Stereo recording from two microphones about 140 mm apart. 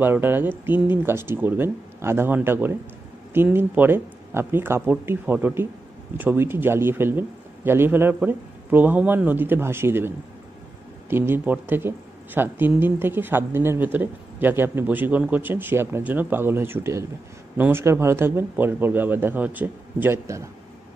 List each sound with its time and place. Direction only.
0.0 s a woman's voice: 15° right (ahead or behind)